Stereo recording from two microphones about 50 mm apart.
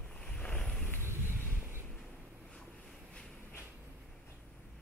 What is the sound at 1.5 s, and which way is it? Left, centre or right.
Vehicle, right.